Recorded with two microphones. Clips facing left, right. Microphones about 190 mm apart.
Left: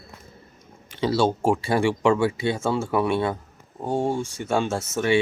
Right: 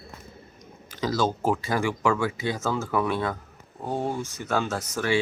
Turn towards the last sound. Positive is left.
turn(degrees=25)  # may be behind; listen again after turning